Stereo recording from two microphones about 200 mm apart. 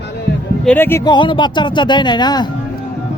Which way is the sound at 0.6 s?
10° left (ahead or behind).